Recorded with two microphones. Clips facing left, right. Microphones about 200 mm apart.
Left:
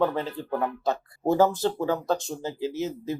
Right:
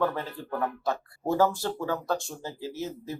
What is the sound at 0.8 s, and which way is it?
Speech, 20° left (ahead or behind).